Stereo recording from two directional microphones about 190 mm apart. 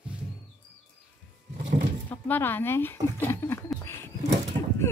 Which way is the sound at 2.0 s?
10° left (ahead or behind).